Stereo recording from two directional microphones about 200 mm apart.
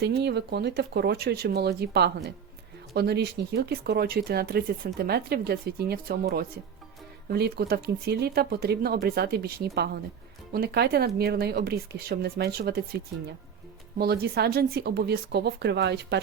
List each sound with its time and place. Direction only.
0.0 s speech: 55° right (ahead or behind)
14.0 s speech: 50° right (ahead or behind)